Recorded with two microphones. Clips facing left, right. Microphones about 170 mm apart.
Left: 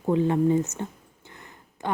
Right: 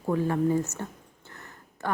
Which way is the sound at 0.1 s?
20° left (ahead or behind).